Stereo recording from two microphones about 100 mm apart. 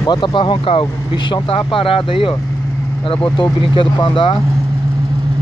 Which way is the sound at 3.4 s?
55° left (ahead or behind).